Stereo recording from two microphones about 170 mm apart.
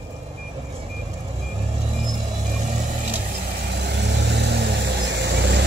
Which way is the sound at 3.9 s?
80° right.